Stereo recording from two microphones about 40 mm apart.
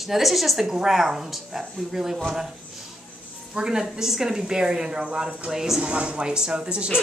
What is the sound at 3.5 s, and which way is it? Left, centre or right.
Speech, centre.